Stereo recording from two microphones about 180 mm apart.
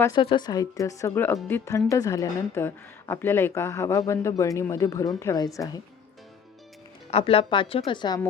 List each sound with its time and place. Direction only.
0.0 s a woman's voice: 25° left (ahead or behind)
7.1 s a woman's voice: 30° left (ahead or behind)